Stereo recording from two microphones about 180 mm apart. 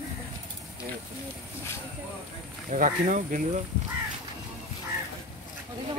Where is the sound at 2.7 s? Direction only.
45° right (ahead or behind).